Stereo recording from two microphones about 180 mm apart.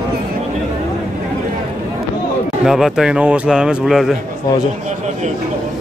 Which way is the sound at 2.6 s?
5° right (ahead or behind).